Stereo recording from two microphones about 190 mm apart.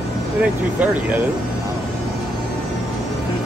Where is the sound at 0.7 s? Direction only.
10° right (ahead or behind).